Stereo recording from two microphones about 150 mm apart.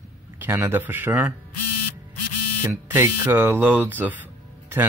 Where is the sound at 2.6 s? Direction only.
15° right (ahead or behind).